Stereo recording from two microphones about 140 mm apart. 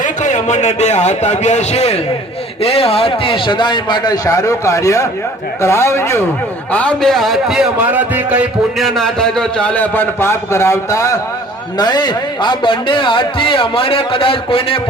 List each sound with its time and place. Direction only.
0.0 s a man's voice: 60° left (ahead or behind); by 8.9 s 10° right (ahead or behind)
9.0 s a man's voice: 5° left (ahead or behind); by 11.1 s 20° left (ahead or behind)
11.8 s a man's voice: 30° left (ahead or behind)